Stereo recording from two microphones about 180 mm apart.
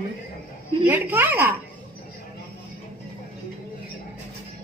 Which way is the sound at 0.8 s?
10° right (ahead or behind).